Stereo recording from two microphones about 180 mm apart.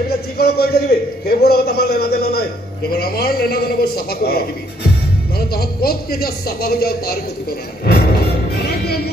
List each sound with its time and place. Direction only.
0.4 s a sound: 60° left (ahead or behind)
2.9 s speech: 60° left (ahead or behind)
5.5 s speech: 55° left (ahead or behind)
7.8 s music: 60° left (ahead or behind)